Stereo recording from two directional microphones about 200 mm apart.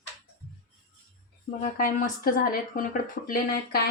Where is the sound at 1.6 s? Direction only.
40° left (ahead or behind).